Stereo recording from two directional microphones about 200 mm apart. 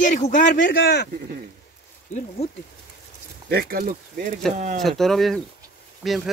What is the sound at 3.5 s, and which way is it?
Speech, 50° right (ahead or behind).